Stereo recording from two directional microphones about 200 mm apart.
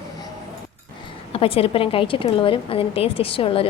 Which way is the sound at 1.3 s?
30° left (ahead or behind).